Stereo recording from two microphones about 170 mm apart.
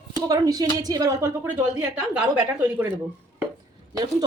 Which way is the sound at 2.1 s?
10° right (ahead or behind).